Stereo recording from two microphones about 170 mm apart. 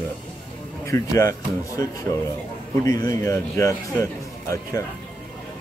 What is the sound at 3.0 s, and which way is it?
A man's voice, 20° left (ahead or behind).